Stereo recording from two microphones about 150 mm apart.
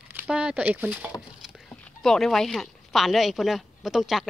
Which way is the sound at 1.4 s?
5° left (ahead or behind).